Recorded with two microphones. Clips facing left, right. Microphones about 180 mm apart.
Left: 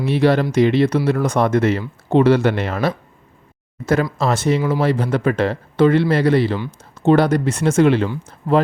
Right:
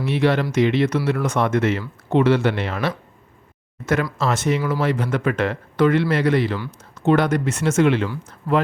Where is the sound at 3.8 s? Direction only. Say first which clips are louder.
Left 3 dB; 30° left (ahead or behind).